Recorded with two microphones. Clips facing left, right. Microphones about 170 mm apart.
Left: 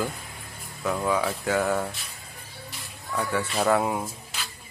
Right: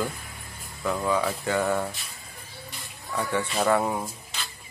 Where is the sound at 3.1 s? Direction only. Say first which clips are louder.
Even; centre (ahead or behind).